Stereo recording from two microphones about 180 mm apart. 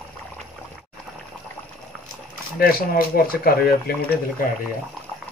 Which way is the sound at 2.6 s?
55° left (ahead or behind).